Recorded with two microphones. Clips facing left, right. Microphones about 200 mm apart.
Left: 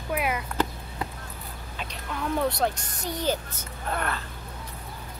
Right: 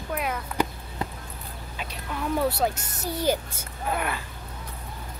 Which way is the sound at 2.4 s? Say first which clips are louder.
Right 1 dB; 5° right (ahead or behind).